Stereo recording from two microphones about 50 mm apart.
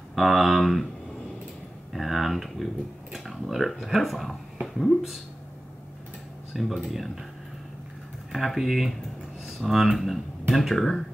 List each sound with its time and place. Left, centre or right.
0.1 s speech: centre
2.0 s speech: centre
6.5 s speech: centre
8.3 s speech: centre